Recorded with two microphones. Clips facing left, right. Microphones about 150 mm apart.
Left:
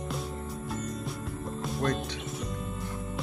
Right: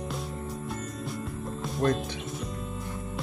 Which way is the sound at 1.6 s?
Centre (ahead or behind).